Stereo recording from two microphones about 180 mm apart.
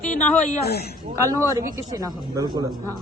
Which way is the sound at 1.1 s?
15° right (ahead or behind).